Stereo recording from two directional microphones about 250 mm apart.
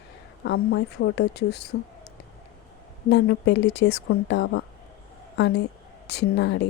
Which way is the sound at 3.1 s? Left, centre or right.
Left.